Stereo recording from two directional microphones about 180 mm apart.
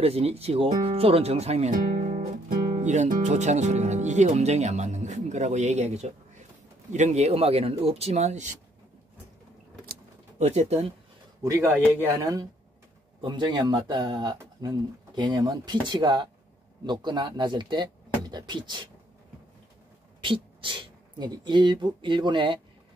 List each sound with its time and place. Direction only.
0.0 s speech: 35° right (ahead or behind)
10.4 s speech: 35° right (ahead or behind)
11.4 s speech: 15° right (ahead or behind)
20.2 s speech: 30° right (ahead or behind)